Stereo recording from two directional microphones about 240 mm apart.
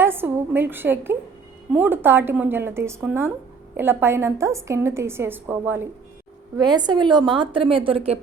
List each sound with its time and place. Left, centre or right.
0.0 s a woman's voice: centre